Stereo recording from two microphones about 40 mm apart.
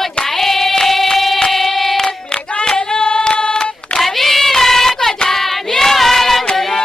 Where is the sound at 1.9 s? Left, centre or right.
Centre.